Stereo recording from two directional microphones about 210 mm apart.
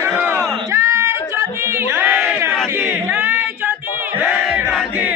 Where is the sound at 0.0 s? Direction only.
10° right (ahead or behind).